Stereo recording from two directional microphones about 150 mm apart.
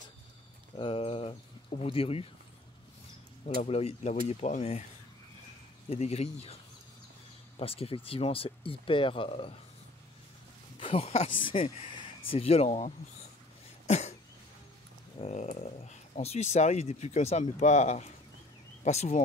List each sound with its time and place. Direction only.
0.7 s a sound: 35° left (ahead or behind)
1.8 s speech: 40° left (ahead or behind)
3.4 s speech: 40° left (ahead or behind)
5.9 s speech: 45° left (ahead or behind)
10.8 s speech: 40° left (ahead or behind)
13.8 s cough: 50° left (ahead or behind)
15.1 s speech: 45° left (ahead or behind)